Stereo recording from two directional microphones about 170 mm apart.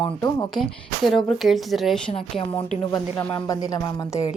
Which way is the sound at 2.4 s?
30° left (ahead or behind).